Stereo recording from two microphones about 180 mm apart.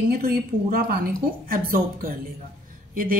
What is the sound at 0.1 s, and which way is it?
A woman's voice, 55° right (ahead or behind).